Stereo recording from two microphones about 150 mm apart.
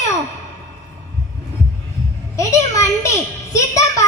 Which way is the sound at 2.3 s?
20° left (ahead or behind).